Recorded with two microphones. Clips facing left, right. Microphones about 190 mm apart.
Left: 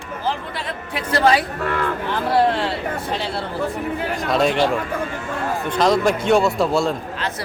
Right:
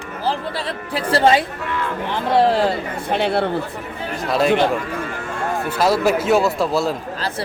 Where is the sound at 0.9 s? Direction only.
30° right (ahead or behind).